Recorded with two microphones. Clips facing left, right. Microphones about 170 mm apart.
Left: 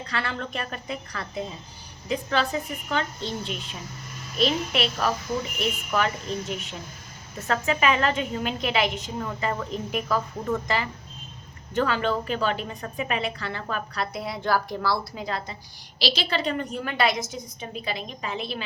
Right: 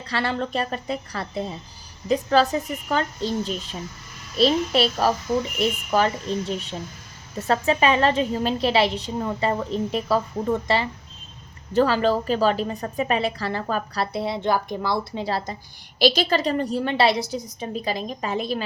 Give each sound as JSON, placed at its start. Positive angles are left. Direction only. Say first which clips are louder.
{"t": 0.1, "sound": "a woman's voice", "louder": "right 7 dB", "side_deg": -35}
{"t": 16.0, "sound": "a woman's voice", "louder": "right 7 dB", "side_deg": -50}